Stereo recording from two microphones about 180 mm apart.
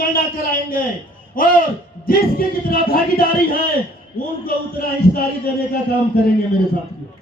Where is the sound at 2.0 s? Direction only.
55° left (ahead or behind).